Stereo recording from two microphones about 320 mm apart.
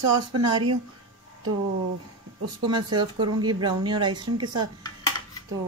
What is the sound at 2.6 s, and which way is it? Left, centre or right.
Speech, centre.